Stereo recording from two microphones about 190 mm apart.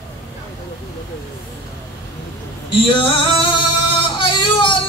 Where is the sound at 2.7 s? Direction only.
25° left (ahead or behind).